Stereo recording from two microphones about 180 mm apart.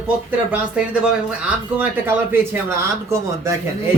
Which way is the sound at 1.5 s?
10° right (ahead or behind).